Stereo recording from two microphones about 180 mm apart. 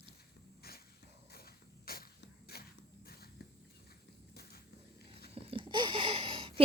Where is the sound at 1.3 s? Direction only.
60° left (ahead or behind).